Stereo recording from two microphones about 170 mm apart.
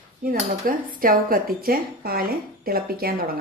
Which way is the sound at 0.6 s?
55° right (ahead or behind).